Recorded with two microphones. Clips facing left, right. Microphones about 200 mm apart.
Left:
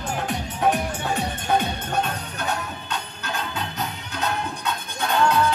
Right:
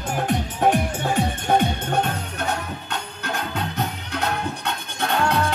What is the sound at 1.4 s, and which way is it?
Music, 55° right (ahead or behind).